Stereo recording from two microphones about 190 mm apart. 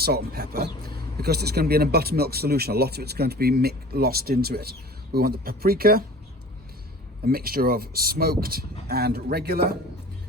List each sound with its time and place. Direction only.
0.0 s speech: 55° right (ahead or behind)
7.3 s speech: 50° right (ahead or behind)